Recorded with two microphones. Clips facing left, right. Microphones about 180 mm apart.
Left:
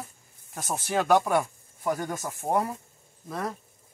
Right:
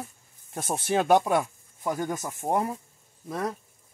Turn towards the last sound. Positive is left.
turn(degrees=-10)  # may be behind; listen again after turning